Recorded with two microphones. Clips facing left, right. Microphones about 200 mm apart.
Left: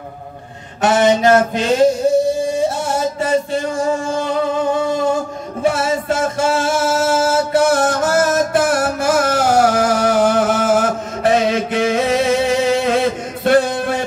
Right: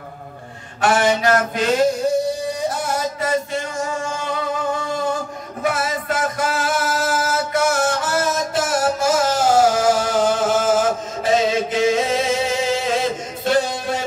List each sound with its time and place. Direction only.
0.8 s a sound: 25° left (ahead or behind)
3.2 s music: 30° left (ahead or behind)
5.6 s music: 30° left (ahead or behind); by 13.9 s 60° left (ahead or behind)